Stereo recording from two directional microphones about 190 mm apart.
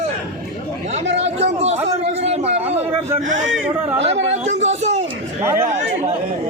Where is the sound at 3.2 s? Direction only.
85° right.